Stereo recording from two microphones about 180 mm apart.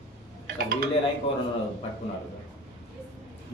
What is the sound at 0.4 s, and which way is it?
Dishes, 55° right (ahead or behind).